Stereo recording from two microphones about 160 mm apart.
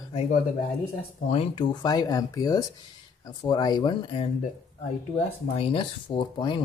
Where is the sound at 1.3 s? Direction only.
35° left (ahead or behind).